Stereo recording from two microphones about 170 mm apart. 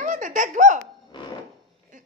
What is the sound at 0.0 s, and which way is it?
Giggle, 50° right (ahead or behind).